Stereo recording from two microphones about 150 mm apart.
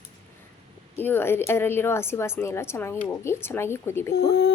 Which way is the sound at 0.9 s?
15° left (ahead or behind).